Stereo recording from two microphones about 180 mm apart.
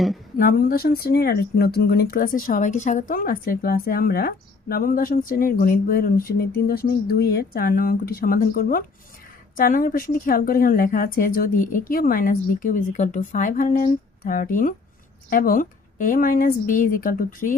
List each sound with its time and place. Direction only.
0.3 s speech: 55° left (ahead or behind)